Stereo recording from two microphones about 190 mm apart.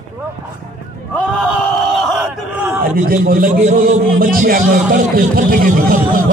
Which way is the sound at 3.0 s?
50° right (ahead or behind).